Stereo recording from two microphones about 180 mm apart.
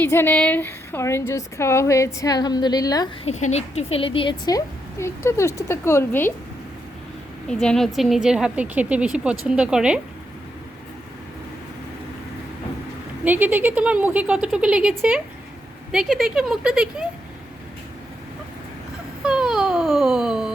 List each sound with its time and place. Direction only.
0.0 s a woman's voice: 10° left (ahead or behind)
3.2 s a woman's voice: 40° left (ahead or behind); by 6.3 s 10° left (ahead or behind)
7.4 s a woman's voice: 5° left (ahead or behind)
13.2 s a woman's voice: 10° right (ahead or behind)
19.2 s a sound: 5° right (ahead or behind)